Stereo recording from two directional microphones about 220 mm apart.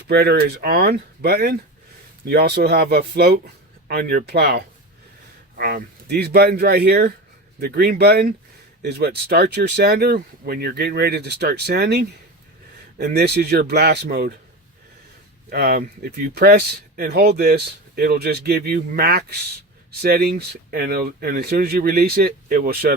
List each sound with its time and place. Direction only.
0.1 s speech: 45° right (ahead or behind)
15.4 s speech: 45° right (ahead or behind)